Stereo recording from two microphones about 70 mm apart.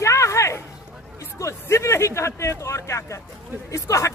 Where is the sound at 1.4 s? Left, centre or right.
Left.